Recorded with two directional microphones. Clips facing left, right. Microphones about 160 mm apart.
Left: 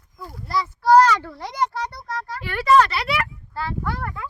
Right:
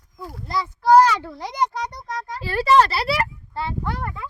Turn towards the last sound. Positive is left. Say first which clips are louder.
# even
turn(degrees=-20)  # may be behind; listen again after turning